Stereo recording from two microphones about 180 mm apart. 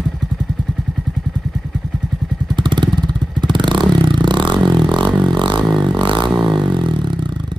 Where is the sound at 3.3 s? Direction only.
25° right (ahead or behind).